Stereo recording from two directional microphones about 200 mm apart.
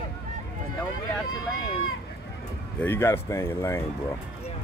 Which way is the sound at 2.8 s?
10° left (ahead or behind).